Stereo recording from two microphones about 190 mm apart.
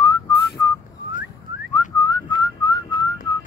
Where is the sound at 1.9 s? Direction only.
20° left (ahead or behind).